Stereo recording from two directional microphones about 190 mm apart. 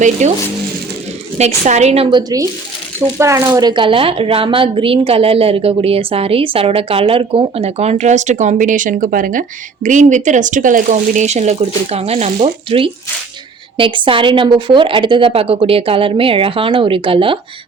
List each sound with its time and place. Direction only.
0.0 s speech: 40° right (ahead or behind)
1.4 s a woman's voice: 35° right (ahead or behind)